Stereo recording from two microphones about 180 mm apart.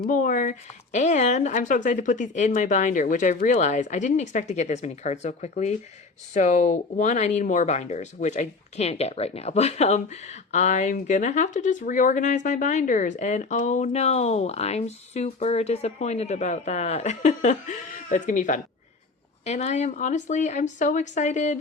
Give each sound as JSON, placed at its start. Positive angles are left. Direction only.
{"t": 0.1, "sound": "speech", "side_deg": 45}